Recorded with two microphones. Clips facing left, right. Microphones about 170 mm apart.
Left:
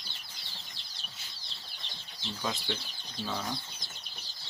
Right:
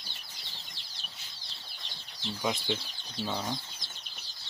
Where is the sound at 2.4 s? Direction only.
20° right (ahead or behind).